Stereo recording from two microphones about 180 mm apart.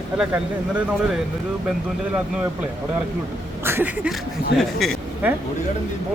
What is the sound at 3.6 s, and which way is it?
Speech, 10° right (ahead or behind).